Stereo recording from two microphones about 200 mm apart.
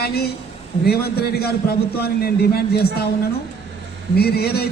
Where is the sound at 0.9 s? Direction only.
50° left (ahead or behind).